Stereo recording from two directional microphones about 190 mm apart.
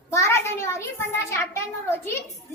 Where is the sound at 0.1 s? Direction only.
15° left (ahead or behind).